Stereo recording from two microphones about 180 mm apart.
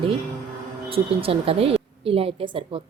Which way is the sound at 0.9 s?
30° right (ahead or behind).